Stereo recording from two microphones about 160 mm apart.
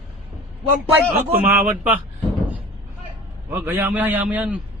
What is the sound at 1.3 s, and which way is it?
Speech, 10° right (ahead or behind).